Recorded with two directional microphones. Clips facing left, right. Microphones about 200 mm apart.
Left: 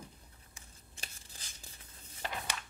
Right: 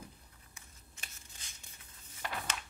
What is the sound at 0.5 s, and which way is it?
Tearing, 35° left (ahead or behind).